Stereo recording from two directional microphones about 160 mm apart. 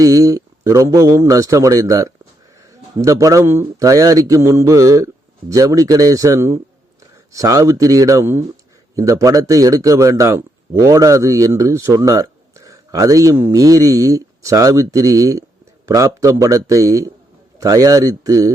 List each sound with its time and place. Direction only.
0.0 s speech: 20° right (ahead or behind)